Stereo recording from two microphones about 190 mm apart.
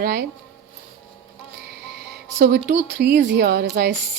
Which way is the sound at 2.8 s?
65° right (ahead or behind).